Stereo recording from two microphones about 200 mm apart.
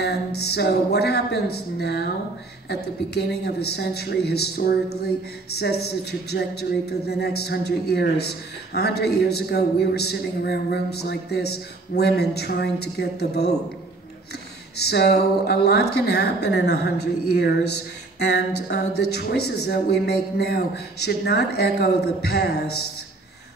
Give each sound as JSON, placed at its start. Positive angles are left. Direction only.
{"t": 0.0, "sound": "a woman's voice", "side_deg": 55}
{"t": 14.8, "sound": "a woman's voice", "side_deg": 55}
{"t": 18.2, "sound": "a woman's voice", "side_deg": 55}